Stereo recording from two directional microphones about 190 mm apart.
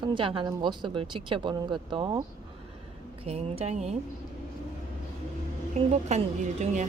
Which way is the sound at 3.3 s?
35° right (ahead or behind).